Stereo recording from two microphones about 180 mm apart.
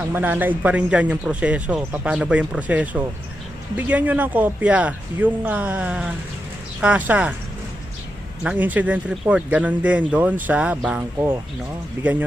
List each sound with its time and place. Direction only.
0.1 s speech: 10° right (ahead or behind)
7.1 s speech: 5° right (ahead or behind)
8.4 s speech: 10° right (ahead or behind)